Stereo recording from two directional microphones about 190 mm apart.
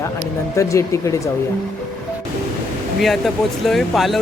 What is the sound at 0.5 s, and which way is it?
Speech, 15° left (ahead or behind).